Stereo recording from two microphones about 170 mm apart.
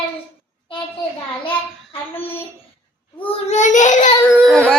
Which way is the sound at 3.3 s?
45° left (ahead or behind).